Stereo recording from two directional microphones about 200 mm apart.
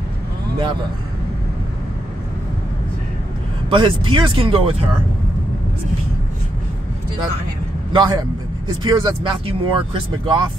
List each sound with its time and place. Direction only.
3.7 s speech: 25° right (ahead or behind)
7.9 s speech: 20° right (ahead or behind)